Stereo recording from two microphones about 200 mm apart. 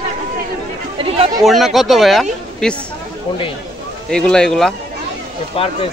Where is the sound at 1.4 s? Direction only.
Centre (ahead or behind).